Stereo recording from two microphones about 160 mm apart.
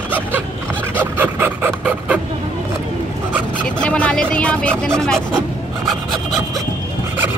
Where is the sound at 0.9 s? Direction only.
10° right (ahead or behind).